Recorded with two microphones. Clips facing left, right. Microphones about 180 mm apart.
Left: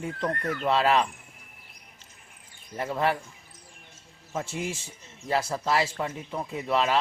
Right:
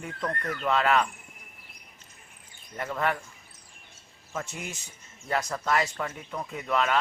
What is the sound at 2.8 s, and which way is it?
Speech, 25° left (ahead or behind).